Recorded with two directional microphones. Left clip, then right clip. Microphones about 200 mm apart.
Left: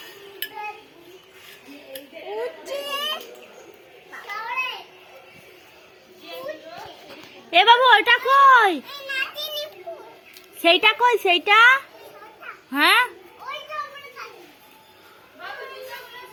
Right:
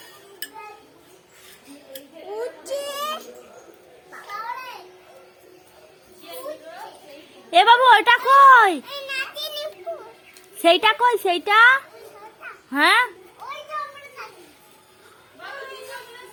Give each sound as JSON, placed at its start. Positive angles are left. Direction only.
{"t": 1.9, "sound": "a sound", "side_deg": -10}
{"t": 2.6, "sound": "children playing", "side_deg": -25}
{"t": 7.5, "sound": "a woman's voice", "side_deg": -15}
{"t": 8.8, "sound": "children playing", "side_deg": -45}
{"t": 10.6, "sound": "a woman's voice", "side_deg": -10}
{"t": 10.9, "sound": "a woman's voice", "side_deg": 0}